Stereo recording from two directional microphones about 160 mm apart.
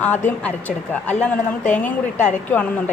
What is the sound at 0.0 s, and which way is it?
A woman's voice, 10° left (ahead or behind).